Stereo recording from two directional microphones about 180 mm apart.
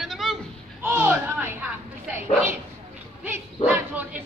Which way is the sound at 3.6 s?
35° left (ahead or behind).